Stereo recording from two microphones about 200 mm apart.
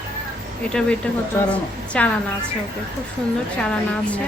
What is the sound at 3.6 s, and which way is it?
Speech, 5° left (ahead or behind).